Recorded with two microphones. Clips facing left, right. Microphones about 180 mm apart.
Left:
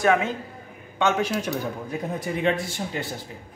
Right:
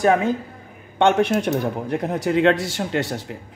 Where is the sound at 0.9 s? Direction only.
60° right (ahead or behind); by 3.3 s 75° right (ahead or behind).